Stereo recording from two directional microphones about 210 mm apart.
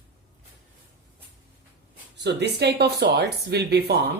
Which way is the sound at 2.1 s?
55° right (ahead or behind).